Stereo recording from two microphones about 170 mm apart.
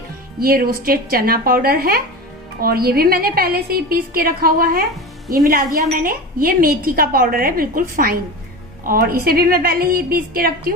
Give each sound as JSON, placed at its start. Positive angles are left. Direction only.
{"t": 0.4, "sound": "a woman's voice", "side_deg": -60}